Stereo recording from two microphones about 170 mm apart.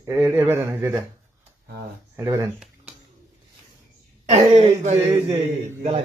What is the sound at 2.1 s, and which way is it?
Speech, 15° right (ahead or behind).